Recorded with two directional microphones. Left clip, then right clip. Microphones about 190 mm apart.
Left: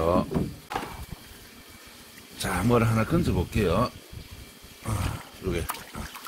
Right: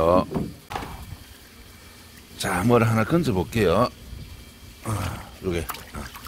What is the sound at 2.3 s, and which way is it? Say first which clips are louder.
Speech: right 4 dB; 30° right (ahead or behind).